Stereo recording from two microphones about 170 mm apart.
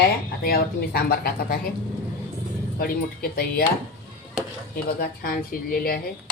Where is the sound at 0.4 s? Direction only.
60° left (ahead or behind).